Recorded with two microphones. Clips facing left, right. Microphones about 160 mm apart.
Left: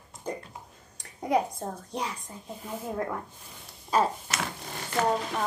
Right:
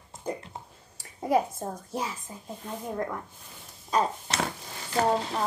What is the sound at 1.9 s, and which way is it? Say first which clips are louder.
A child's voice: right 1 dB; 5° right (ahead or behind).